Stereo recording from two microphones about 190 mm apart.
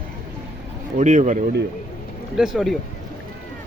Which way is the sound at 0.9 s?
40° right (ahead or behind).